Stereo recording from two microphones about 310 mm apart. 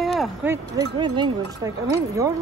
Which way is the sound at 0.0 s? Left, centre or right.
Centre.